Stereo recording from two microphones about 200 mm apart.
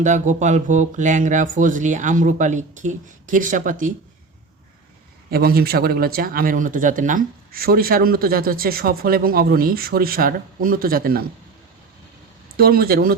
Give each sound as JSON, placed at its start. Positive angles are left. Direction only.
{"t": 0.0, "sound": "speech", "side_deg": -35}
{"t": 5.3, "sound": "speech", "side_deg": -50}
{"t": 12.5, "sound": "speech", "side_deg": -50}